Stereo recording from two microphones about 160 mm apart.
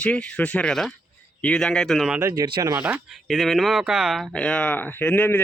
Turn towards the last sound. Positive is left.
turn(degrees=10)  # may be behind; listen again after turning